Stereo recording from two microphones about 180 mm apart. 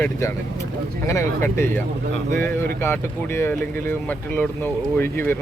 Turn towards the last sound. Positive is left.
turn(degrees=10)  # may be behind; listen again after turning